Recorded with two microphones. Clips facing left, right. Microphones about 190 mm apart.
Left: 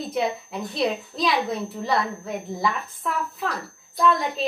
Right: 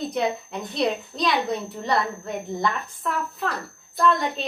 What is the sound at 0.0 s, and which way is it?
A woman's voice, centre (ahead or behind).